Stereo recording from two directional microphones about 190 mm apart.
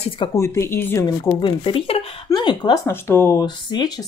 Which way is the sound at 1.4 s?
25° left (ahead or behind).